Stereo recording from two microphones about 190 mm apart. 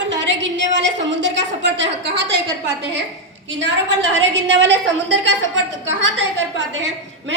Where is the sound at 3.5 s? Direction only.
75° right (ahead or behind).